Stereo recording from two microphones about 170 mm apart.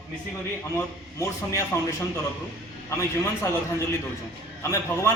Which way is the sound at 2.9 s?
15° left (ahead or behind).